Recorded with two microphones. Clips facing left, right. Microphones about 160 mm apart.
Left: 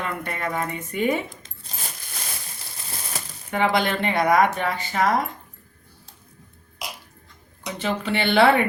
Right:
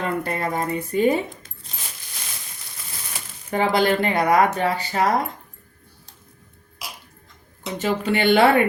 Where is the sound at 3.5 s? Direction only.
35° right (ahead or behind).